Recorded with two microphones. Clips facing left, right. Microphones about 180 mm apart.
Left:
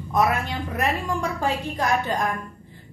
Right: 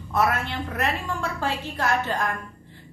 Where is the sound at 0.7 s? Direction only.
15° left (ahead or behind).